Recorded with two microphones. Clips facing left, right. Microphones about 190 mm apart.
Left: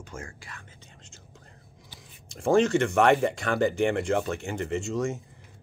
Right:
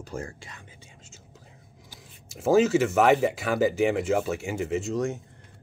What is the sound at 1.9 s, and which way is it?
Speech, 5° right (ahead or behind).